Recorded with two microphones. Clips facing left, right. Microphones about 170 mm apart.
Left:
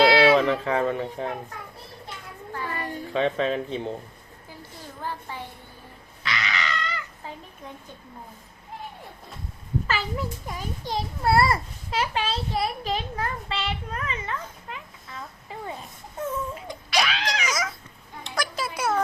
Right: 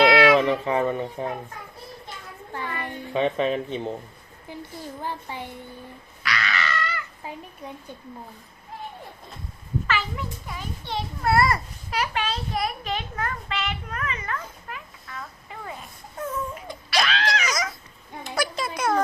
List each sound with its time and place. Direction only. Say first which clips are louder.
0.0 s baby cry: even; 30° left (ahead or behind)
0.3 s speech: right 1 dB; centre (ahead or behind)
3.1 s speech: right 1 dB; 5° right (ahead or behind)
5.0 s speech: left 1 dB; 15° right (ahead or behind)
6.2 s a sound: right 2 dB; 20° left (ahead or behind)
7.2 s a child's voice: right 3 dB; 10° right (ahead or behind)
9.8 s a child's voice: even; 40° left (ahead or behind)
16.2 s whimper: even; 10° left (ahead or behind)
18.2 s a sound: right 3 dB; 5° right (ahead or behind)
18.6 s a sound: even; 5° left (ahead or behind)